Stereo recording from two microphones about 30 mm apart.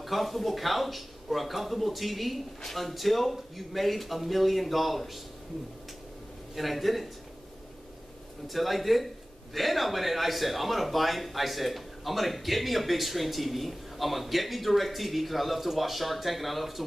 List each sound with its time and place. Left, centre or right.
0.0 s a man's voice: centre
6.5 s a man's voice: centre
8.5 s a man's voice: centre